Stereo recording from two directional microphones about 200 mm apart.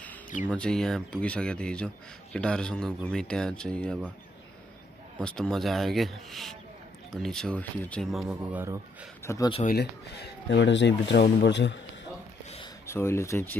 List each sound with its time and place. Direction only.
0.5 s speech: 5° left (ahead or behind)
5.2 s speech: 5° left (ahead or behind)
9.2 s speech: 15° left (ahead or behind)
9.5 s speech: 35° left (ahead or behind)
9.8 s speech: 55° left (ahead or behind)
12.8 s speech: 10° left (ahead or behind)